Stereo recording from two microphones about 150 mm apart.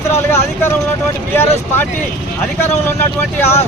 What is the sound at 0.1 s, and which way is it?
Speech, 15° left (ahead or behind).